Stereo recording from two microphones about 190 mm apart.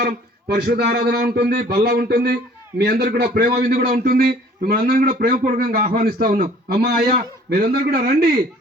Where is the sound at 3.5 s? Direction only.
40° right (ahead or behind).